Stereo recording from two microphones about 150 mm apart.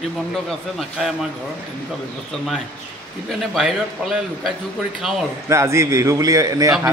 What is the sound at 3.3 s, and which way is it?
A man's voice, centre (ahead or behind).